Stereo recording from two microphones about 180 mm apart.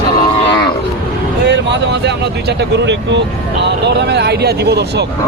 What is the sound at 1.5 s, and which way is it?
Speech, 70° right (ahead or behind).